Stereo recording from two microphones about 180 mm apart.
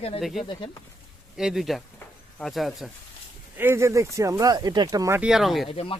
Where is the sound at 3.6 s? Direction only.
15° right (ahead or behind).